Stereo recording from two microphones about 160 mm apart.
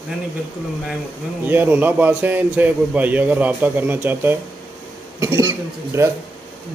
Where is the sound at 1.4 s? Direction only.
10° right (ahead or behind).